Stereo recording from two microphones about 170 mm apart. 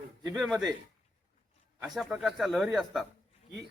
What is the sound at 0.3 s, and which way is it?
Speech, centre (ahead or behind).